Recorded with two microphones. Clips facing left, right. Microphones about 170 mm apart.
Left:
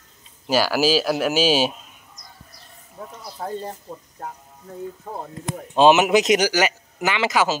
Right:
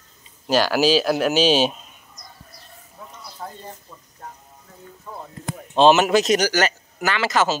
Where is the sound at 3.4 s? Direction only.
50° left (ahead or behind).